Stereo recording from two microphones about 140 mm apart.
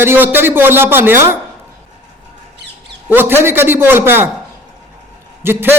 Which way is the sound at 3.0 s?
15° right (ahead or behind).